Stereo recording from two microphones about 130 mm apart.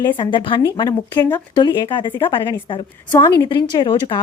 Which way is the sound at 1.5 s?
35° left (ahead or behind).